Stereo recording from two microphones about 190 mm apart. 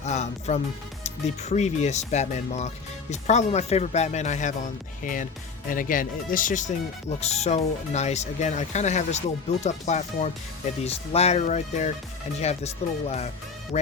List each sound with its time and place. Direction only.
0.0 s speech: 35° left (ahead or behind)